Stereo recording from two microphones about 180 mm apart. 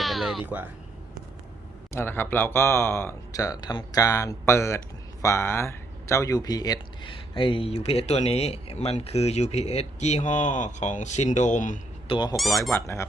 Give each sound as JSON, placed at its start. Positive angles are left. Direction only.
{"t": 0.0, "sound": "a sound", "side_deg": 0}
{"t": 1.9, "sound": "speech", "side_deg": 15}
{"t": 12.0, "sound": "speech", "side_deg": 25}
{"t": 12.4, "sound": "speech", "side_deg": 0}
{"t": 12.7, "sound": "speech", "side_deg": 15}